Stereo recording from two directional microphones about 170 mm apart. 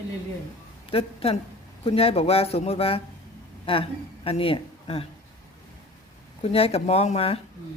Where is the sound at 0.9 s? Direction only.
35° left (ahead or behind).